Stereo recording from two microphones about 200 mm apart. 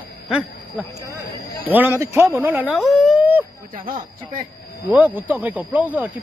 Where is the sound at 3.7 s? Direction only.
45° right (ahead or behind).